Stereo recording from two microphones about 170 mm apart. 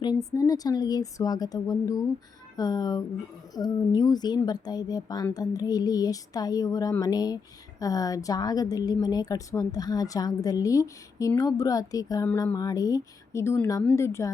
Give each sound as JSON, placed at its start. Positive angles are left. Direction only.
{"t": 0.3, "sound": "a woman's voice", "side_deg": 20}